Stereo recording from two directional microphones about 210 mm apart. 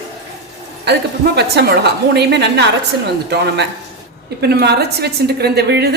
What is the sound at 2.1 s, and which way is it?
Speech, 55° right (ahead or behind).